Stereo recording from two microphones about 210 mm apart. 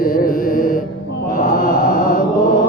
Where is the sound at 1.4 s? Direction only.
40° left (ahead or behind).